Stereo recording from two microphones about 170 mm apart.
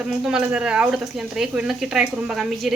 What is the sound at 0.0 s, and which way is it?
Speech, 5° right (ahead or behind).